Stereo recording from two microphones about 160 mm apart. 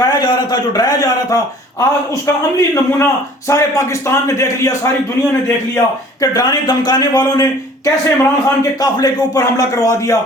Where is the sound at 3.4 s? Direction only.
20° left (ahead or behind).